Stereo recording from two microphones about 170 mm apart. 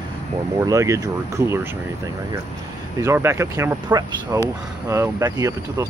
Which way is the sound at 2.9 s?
15° right (ahead or behind).